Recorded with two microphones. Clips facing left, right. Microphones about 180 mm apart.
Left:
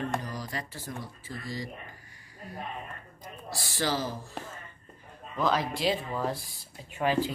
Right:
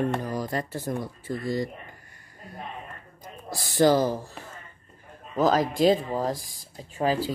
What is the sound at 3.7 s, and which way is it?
Speech, 50° right (ahead or behind).